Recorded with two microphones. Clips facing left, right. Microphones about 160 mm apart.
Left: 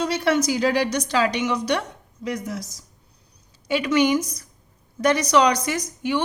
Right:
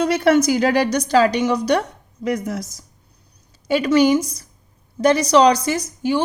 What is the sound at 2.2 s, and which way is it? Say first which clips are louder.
Speech: right 6 dB; 55° right (ahead or behind).